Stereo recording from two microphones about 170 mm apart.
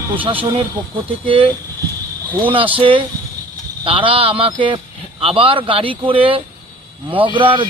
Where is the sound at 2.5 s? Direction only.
30° right (ahead or behind).